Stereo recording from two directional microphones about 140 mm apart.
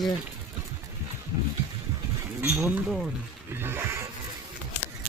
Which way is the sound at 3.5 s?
15° right (ahead or behind).